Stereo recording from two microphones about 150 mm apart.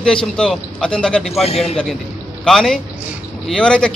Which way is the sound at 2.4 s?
Centre (ahead or behind).